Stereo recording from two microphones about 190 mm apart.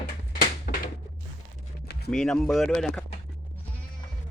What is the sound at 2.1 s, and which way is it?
Speech, centre (ahead or behind).